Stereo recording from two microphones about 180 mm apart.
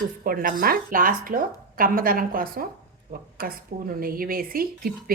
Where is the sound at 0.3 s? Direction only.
55° right (ahead or behind).